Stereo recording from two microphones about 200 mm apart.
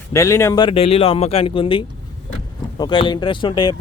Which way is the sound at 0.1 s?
15° left (ahead or behind).